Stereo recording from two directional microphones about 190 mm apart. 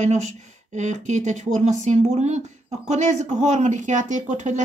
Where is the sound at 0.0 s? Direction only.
35° right (ahead or behind).